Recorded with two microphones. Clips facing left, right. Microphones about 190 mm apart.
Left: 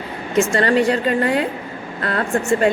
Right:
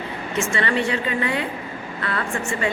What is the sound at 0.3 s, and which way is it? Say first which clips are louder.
A woman's voice: left 7 dB; 40° left (ahead or behind).